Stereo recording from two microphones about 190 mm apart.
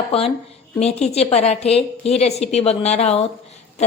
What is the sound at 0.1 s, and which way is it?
A woman's voice, 30° left (ahead or behind).